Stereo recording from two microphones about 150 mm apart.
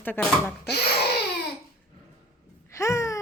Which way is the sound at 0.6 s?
90° left.